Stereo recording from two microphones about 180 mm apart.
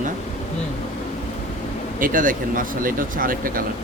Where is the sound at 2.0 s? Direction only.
50° right (ahead or behind).